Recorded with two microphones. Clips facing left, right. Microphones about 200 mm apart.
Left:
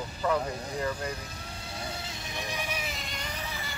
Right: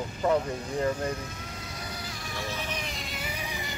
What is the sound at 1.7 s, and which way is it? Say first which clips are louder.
Mosquito: left 3 dB; 30° left (ahead or behind).